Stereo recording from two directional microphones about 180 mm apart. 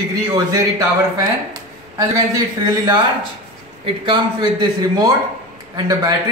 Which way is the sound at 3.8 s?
25° right (ahead or behind).